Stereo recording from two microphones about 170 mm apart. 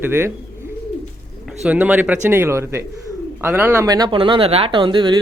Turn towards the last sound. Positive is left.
turn(degrees=-30)  # may be behind; listen again after turning